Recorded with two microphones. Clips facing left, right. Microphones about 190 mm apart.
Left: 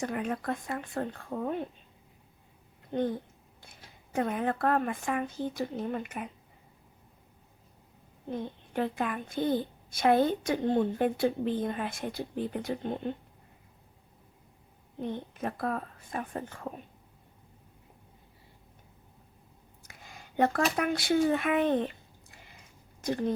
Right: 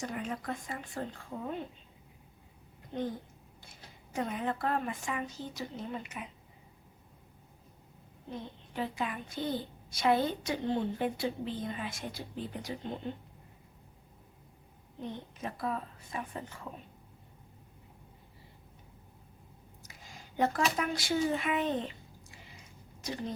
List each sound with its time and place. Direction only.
0.0 s speech: 60° left (ahead or behind)
2.9 s speech: 55° left (ahead or behind)
8.3 s a woman's voice: 55° left (ahead or behind)
15.0 s a woman's voice: 55° left (ahead or behind)
19.8 s a sound: 60° left (ahead or behind)
23.0 s a woman's voice: 55° left (ahead or behind)